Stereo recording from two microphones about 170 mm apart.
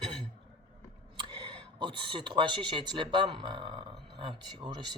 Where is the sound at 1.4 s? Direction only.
30° right (ahead or behind).